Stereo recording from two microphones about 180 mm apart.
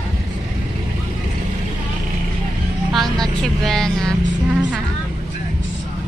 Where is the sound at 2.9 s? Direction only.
Centre (ahead or behind).